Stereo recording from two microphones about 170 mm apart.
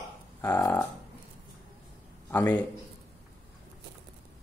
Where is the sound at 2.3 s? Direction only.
10° left (ahead or behind).